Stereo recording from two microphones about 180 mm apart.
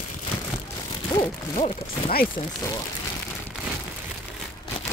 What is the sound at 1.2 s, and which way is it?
Speech, 35° left (ahead or behind).